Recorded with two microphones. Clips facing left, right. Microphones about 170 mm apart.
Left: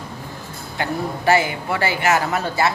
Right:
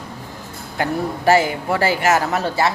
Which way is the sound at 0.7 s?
45° right (ahead or behind).